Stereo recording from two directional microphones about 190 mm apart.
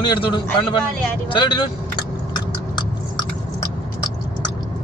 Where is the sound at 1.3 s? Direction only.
25° left (ahead or behind).